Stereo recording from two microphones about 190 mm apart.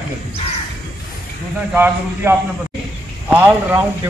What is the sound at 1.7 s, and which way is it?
A man's voice, 10° right (ahead or behind).